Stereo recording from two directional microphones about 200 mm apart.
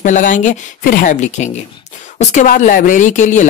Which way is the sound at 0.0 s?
40° left (ahead or behind).